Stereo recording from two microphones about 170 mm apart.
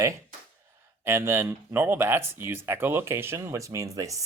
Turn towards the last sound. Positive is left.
turn(degrees=-20)  # may be behind; listen again after turning